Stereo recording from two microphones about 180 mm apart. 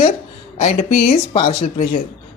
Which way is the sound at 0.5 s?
40° left (ahead or behind).